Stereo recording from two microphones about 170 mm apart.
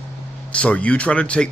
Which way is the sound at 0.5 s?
5° left (ahead or behind).